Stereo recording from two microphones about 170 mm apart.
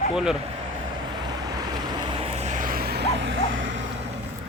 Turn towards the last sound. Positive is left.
turn(degrees=-90)